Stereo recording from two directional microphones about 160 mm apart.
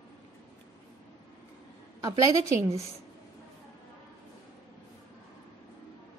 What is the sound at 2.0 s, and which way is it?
Speech, 20° right (ahead or behind).